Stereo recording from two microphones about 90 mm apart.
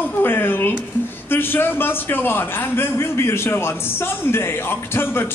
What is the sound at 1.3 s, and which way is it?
A man's voice, 25° left (ahead or behind).